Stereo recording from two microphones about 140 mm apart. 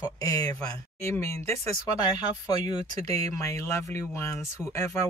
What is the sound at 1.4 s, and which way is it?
Speech, 50° right (ahead or behind).